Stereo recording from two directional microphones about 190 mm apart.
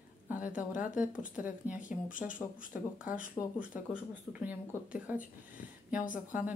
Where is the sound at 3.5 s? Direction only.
10° right (ahead or behind).